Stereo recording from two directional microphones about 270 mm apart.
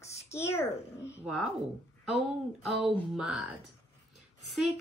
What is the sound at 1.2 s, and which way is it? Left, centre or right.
Speech, centre.